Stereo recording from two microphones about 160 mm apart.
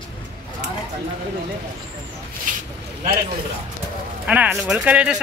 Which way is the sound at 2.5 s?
55° right (ahead or behind).